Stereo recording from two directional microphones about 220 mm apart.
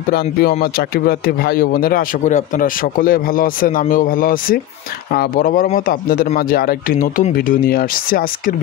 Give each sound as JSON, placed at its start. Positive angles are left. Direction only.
{"t": 0.1, "sound": "speech", "side_deg": 45}